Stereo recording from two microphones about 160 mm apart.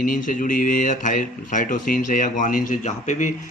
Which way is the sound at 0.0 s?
55° left (ahead or behind).